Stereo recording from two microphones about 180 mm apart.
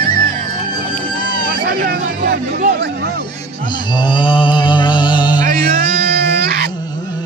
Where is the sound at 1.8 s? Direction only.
55° right (ahead or behind).